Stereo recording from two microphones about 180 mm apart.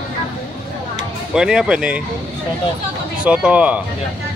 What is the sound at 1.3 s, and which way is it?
Speech, 5° right (ahead or behind).